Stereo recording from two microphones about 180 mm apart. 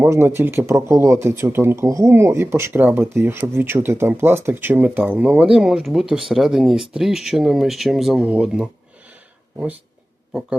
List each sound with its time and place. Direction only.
0.0 s speech: 15° right (ahead or behind)